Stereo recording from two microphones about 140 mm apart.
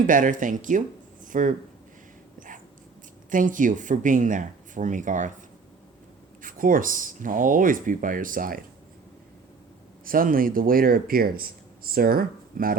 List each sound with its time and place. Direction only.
0.1 s speech: 70° right (ahead or behind)
1.2 s a sound: 70° right (ahead or behind)
3.2 s speech: 70° right (ahead or behind)
6.4 s speech: 75° right (ahead or behind)
10.1 s speech: 90° right